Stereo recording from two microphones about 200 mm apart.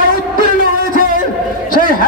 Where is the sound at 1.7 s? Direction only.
45° left (ahead or behind).